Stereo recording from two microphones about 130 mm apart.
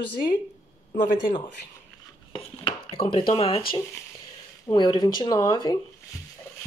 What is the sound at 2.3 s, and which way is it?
Dishes, 45° left (ahead or behind).